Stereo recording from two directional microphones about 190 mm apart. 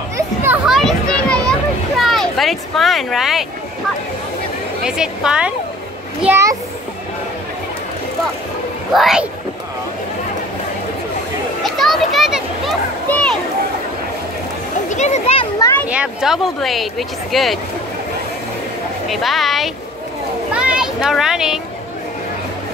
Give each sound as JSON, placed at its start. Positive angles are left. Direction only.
{"t": 0.7, "sound": "children playing", "side_deg": 0}
{"t": 1.5, "sound": "a sound", "side_deg": 0}
{"t": 4.8, "sound": "a child's voice", "side_deg": -5}
{"t": 8.9, "sound": "speech", "side_deg": 0}
{"t": 11.6, "sound": "children playing", "side_deg": 0}
{"t": 13.1, "sound": "a sound", "side_deg": 5}
{"t": 14.9, "sound": "a child's voice", "side_deg": 35}
{"t": 15.9, "sound": "speech", "side_deg": -5}
{"t": 19.0, "sound": "speech", "side_deg": 0}
{"t": 20.5, "sound": "a sound", "side_deg": -5}